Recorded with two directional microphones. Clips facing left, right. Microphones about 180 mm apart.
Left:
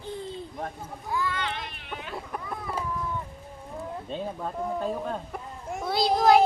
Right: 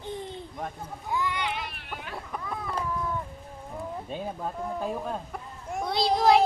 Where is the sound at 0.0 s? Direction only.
20° right (ahead or behind).